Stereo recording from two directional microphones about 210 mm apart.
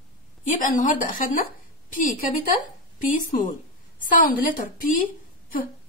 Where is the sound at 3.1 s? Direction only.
40° left (ahead or behind).